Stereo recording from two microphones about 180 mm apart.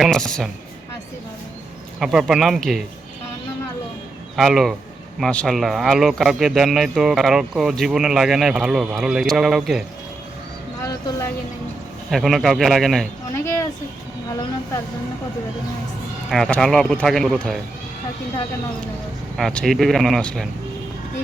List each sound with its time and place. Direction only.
0.0 s speech: 5° left (ahead or behind)
2.0 s speech: centre (ahead or behind)
4.4 s speech: centre (ahead or behind)
10.8 s a sound: 20° left (ahead or behind)
12.1 s speech: centre (ahead or behind)
16.3 s speech: centre (ahead or behind)
19.4 s speech: centre (ahead or behind)